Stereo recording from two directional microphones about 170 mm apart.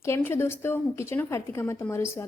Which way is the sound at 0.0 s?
15° left (ahead or behind).